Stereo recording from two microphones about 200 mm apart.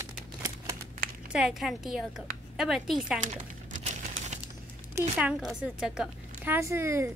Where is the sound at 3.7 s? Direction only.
40° right (ahead or behind).